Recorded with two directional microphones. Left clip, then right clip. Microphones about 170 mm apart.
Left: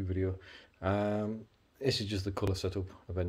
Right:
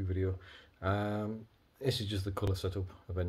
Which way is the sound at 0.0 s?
20° left (ahead or behind).